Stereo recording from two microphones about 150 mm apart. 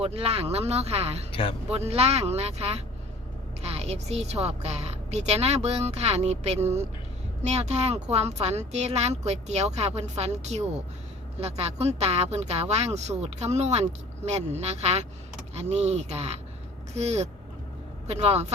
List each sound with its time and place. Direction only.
0.0 s a woman's voice: 40° right (ahead or behind)
1.3 s speech: 35° left (ahead or behind)
1.7 s a woman's voice: 45° right (ahead or behind)